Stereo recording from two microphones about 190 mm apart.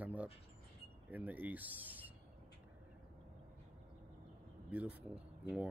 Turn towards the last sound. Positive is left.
turn(degrees=-5)  # may be behind; listen again after turning